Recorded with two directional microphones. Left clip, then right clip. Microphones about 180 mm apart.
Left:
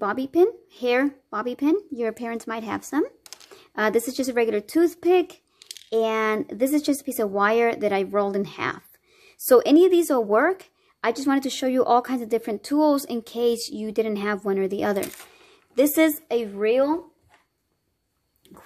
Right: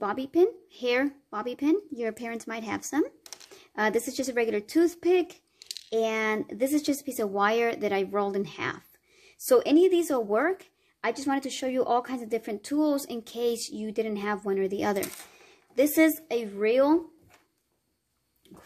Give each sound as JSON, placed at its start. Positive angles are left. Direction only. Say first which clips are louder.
{"t": 0.0, "sound": "speech", "louder": "left 4 dB", "side_deg": 25}
{"t": 18.5, "sound": "pig", "louder": "left 4 dB", "side_deg": 10}